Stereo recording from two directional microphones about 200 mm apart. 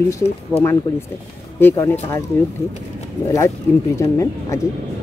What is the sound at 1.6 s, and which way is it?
Speech, 10° left (ahead or behind).